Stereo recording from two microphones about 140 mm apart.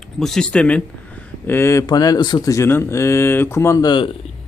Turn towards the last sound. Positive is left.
turn(degrees=35)  # may be behind; listen again after turning